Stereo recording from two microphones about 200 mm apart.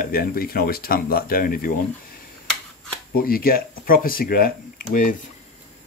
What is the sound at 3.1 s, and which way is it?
Speech, 45° left (ahead or behind).